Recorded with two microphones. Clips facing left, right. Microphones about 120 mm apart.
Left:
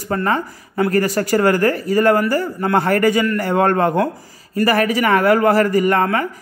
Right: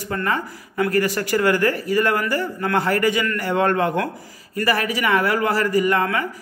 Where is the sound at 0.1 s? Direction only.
35° left (ahead or behind).